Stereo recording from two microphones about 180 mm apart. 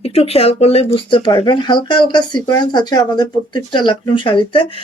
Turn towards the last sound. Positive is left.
turn(degrees=30)  # may be behind; listen again after turning